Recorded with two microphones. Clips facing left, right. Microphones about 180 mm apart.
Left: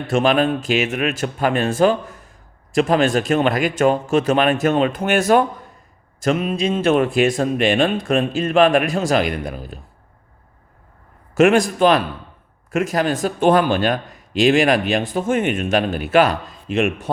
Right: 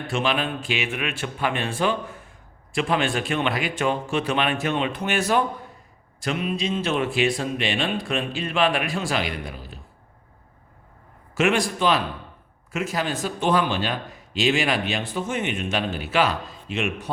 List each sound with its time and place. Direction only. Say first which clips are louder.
0.1 s speech: left 9 dB; 45° left (ahead or behind)
11.3 s speech: left 8 dB; 45° left (ahead or behind)